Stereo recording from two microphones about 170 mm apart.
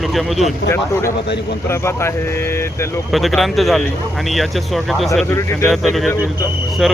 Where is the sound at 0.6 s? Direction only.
15° left (ahead or behind).